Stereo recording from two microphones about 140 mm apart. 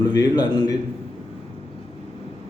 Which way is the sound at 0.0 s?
30° left (ahead or behind).